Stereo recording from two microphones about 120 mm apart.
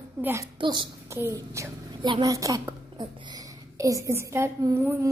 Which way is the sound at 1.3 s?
25° right (ahead or behind).